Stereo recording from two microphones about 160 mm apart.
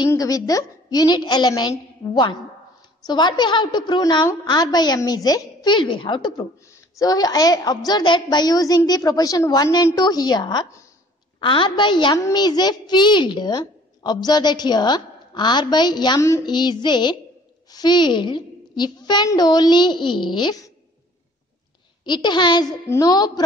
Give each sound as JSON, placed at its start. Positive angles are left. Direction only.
{"t": 0.1, "sound": "a woman's voice", "side_deg": 20}
{"t": 22.0, "sound": "a woman's voice", "side_deg": 30}